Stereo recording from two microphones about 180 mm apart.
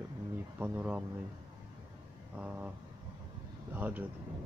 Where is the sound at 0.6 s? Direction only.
10° right (ahead or behind).